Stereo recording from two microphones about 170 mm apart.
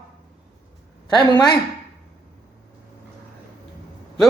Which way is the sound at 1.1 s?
25° left (ahead or behind).